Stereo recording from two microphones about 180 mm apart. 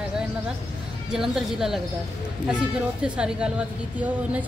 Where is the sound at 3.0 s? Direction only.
5° right (ahead or behind).